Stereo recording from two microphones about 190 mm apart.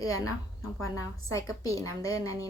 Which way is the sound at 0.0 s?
15° left (ahead or behind).